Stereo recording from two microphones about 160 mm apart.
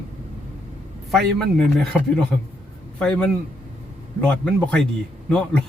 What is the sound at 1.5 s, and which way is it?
A man's voice, 5° left (ahead or behind).